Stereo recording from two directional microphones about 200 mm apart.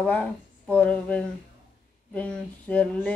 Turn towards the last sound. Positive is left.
turn(degrees=5)  # may be behind; listen again after turning